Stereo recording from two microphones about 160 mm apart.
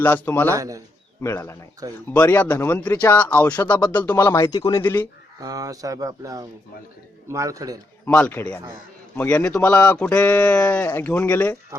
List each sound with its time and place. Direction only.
0.0 s speech: 10° left (ahead or behind)
0.5 s speech: 20° right (ahead or behind)
1.2 s speech: 15° left (ahead or behind)
1.8 s speech: 25° right (ahead or behind)
2.1 s speech: 10° left (ahead or behind)
4.8 s speech: 15° left (ahead or behind)
5.4 s speech: 25° right (ahead or behind)
8.0 s speech: 10° left (ahead or behind)